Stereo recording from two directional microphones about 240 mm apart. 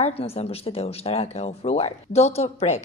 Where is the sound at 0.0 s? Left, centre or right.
Left.